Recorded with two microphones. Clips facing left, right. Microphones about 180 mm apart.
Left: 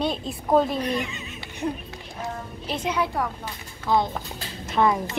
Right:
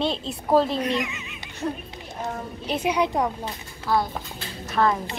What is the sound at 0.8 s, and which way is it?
Speech, 35° left (ahead or behind).